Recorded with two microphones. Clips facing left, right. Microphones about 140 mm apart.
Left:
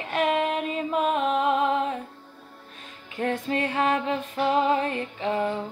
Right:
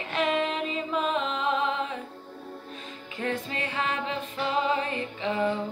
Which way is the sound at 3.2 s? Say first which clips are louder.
Left 5 dB; 55° left (ahead or behind).